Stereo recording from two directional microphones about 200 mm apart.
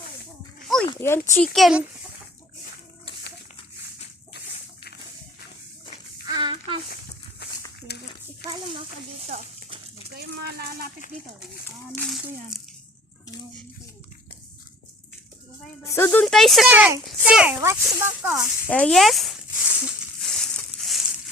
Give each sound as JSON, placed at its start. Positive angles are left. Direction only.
{"t": 0.9, "sound": "speech", "side_deg": 10}
{"t": 1.5, "sound": "speech", "side_deg": 0}
{"t": 6.2, "sound": "a sound", "side_deg": -20}
{"t": 7.9, "sound": "a sound", "side_deg": 55}
{"t": 8.4, "sound": "speech", "side_deg": 55}
{"t": 9.2, "sound": "a child's voice", "side_deg": -35}
{"t": 10.2, "sound": "speech", "side_deg": -50}
{"t": 11.9, "sound": "speech", "side_deg": 0}
{"t": 15.8, "sound": "speech", "side_deg": 15}
{"t": 16.2, "sound": "speech", "side_deg": 0}
{"t": 18.7, "sound": "a sound", "side_deg": 5}